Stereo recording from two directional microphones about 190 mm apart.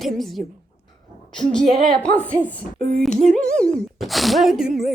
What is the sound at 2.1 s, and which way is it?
A woman's voice, 10° left (ahead or behind).